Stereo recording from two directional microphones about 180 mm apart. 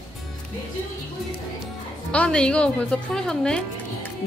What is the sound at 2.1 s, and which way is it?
A woman's voice, 5° left (ahead or behind).